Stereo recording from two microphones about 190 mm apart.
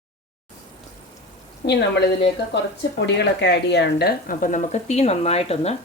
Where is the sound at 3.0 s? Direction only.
65° left (ahead or behind); by 5.7 s 35° left (ahead or behind).